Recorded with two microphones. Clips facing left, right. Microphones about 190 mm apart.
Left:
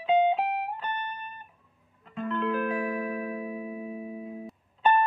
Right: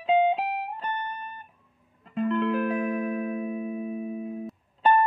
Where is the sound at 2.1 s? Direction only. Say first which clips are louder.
Right 4 dB; 30° right (ahead or behind).